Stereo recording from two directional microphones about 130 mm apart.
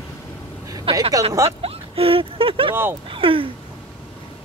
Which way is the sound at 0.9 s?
45° right (ahead or behind).